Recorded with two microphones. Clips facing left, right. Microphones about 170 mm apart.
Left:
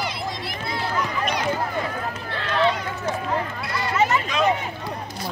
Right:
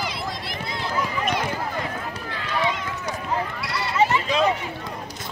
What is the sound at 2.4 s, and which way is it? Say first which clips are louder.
Run: left 4 dB; 10° right (ahead or behind).